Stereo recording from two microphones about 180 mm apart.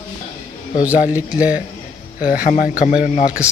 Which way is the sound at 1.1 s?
10° right (ahead or behind).